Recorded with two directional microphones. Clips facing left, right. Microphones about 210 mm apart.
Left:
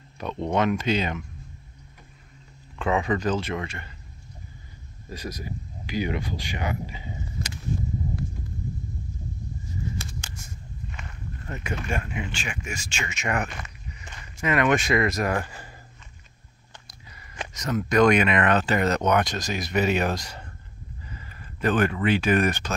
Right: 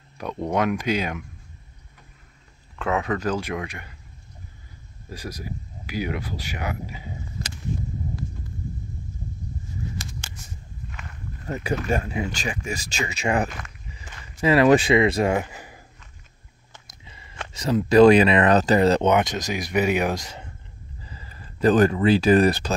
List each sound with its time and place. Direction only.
0.2 s speech: 10° right (ahead or behind)
2.8 s speech: centre (ahead or behind)
5.1 s speech: 10° right (ahead or behind)
11.4 s speech: 35° right (ahead or behind)
15.3 s speech: 15° right (ahead or behind)
17.1 s a sound: 25° right (ahead or behind)
17.6 s speech: 30° right (ahead or behind)
21.0 s speech: 30° right (ahead or behind)